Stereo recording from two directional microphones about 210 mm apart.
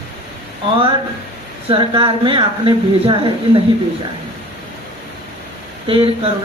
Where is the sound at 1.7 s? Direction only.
25° right (ahead or behind).